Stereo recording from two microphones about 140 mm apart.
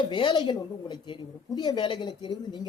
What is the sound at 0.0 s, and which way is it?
Speech, 35° left (ahead or behind).